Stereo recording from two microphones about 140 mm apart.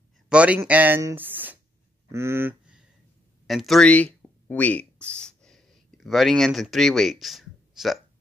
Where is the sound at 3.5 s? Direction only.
Centre (ahead or behind).